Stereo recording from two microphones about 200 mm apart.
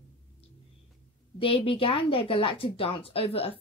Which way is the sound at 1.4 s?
25° left (ahead or behind).